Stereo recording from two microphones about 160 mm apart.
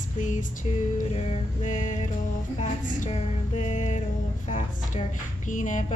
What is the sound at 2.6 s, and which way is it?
A woman's voice, 50° left (ahead or behind).